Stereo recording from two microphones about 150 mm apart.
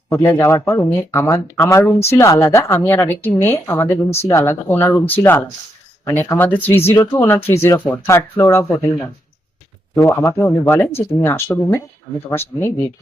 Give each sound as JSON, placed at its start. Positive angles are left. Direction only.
{"t": 0.1, "sound": "speech", "side_deg": 15}